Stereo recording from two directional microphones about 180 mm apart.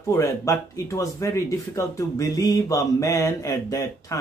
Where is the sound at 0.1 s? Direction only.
15° left (ahead or behind).